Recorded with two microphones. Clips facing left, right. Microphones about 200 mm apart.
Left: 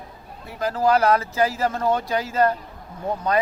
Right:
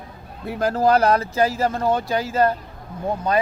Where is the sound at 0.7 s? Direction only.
35° right (ahead or behind).